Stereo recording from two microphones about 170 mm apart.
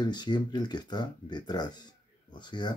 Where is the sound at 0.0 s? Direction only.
25° left (ahead or behind).